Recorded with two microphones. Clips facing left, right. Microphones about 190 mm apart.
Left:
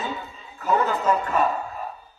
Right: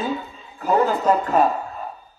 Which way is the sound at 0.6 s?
35° right (ahead or behind).